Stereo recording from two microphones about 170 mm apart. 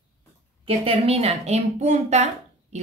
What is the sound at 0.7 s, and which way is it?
A woman's voice, 35° right (ahead or behind).